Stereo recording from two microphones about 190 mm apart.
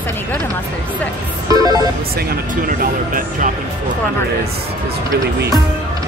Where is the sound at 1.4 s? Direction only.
20° right (ahead or behind).